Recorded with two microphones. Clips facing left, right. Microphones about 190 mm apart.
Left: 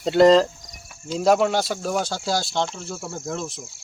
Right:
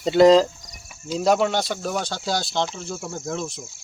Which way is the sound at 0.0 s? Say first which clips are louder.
Right 1 dB; centre (ahead or behind).